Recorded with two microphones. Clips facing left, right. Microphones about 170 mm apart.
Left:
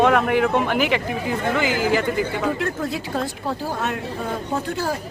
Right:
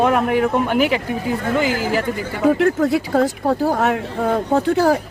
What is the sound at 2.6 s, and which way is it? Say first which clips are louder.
Speech: right 9 dB; 70° right (ahead or behind).